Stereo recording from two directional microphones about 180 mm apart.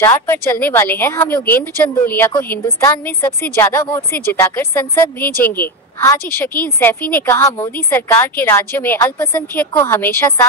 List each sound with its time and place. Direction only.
0.0 s speech: 15° left (ahead or behind)